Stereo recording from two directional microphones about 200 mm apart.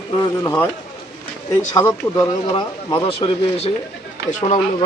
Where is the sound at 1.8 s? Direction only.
15° left (ahead or behind).